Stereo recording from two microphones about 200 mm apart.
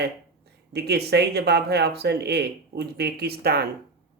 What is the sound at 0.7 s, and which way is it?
Speech, 55° right (ahead or behind).